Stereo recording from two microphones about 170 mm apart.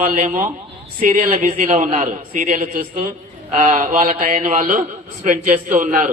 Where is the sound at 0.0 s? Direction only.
45° right (ahead or behind).